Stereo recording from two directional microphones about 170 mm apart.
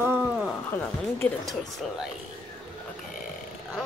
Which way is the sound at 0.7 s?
15° left (ahead or behind).